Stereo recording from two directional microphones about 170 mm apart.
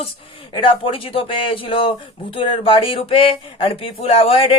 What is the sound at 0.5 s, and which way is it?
Speech, 30° left (ahead or behind).